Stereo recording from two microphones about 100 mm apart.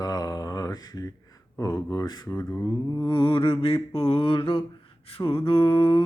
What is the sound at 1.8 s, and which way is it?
Humming, 40° left (ahead or behind).